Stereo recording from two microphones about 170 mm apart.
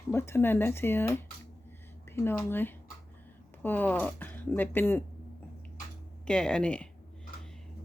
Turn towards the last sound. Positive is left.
turn(degrees=5)  # may be behind; listen again after turning